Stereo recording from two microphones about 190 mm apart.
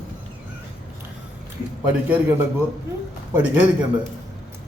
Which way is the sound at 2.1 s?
10° right (ahead or behind).